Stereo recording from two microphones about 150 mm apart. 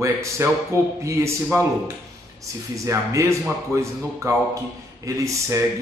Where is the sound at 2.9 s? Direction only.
20° right (ahead or behind).